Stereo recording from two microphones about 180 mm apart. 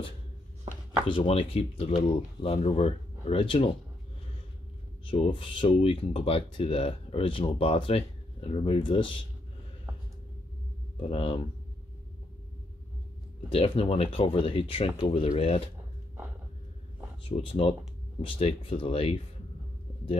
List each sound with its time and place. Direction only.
1.0 s speech: 30° left (ahead or behind)
5.0 s speech: 30° left (ahead or behind)
11.0 s speech: 30° left (ahead or behind)
13.5 s speech: 30° left (ahead or behind)
17.2 s speech: 30° left (ahead or behind)